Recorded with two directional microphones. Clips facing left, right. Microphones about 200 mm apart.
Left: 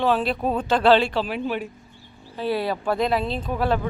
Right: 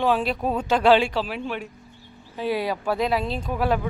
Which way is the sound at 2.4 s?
10° right (ahead or behind).